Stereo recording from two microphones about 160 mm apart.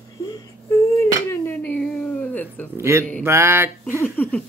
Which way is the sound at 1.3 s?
10° left (ahead or behind).